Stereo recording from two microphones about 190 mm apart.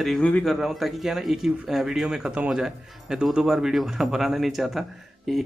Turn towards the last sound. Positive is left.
turn(degrees=0)  # may be behind; listen again after turning